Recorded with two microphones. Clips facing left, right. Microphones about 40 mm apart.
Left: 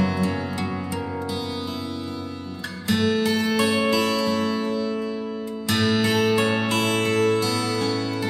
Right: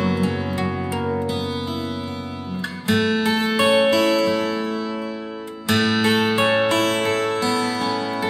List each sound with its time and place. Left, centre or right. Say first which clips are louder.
0.0 s music: right 2 dB; right
2.9 s music: right 2 dB; centre